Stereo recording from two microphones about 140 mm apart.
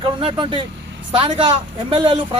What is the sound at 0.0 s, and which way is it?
Speech, 40° right (ahead or behind).